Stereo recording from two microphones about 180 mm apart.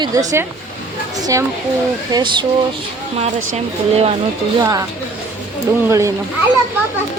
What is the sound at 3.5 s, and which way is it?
Speech, 35° right (ahead or behind).